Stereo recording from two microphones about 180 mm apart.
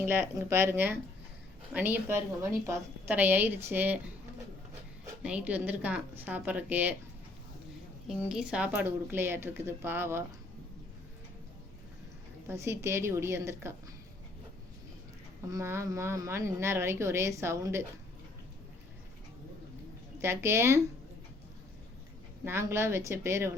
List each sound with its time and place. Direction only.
0.0 s a woman's voice: 10° right (ahead or behind)
5.2 s a woman's voice: 10° right (ahead or behind)
8.0 s a woman's voice: 5° right (ahead or behind)
12.5 s a woman's voice: 15° right (ahead or behind)
15.4 s a woman's voice: 15° right (ahead or behind)
20.1 s a woman's voice: 15° right (ahead or behind)
22.4 s a woman's voice: 15° right (ahead or behind)